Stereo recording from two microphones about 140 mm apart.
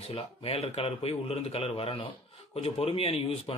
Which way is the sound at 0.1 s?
45° left (ahead or behind).